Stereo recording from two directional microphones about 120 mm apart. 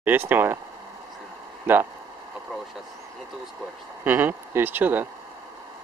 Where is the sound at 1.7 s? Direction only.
20° right (ahead or behind).